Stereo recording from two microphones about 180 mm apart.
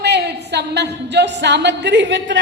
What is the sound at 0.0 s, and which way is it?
A woman's voice, 70° right (ahead or behind).